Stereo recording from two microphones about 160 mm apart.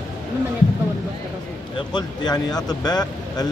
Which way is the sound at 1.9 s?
25° left (ahead or behind).